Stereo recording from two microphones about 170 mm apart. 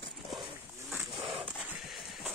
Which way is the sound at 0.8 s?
10° right (ahead or behind).